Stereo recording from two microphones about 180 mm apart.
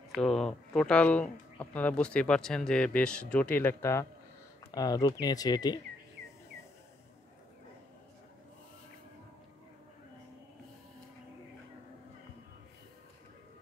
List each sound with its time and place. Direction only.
0.1 s speech: centre (ahead or behind); by 5.8 s 20° left (ahead or behind)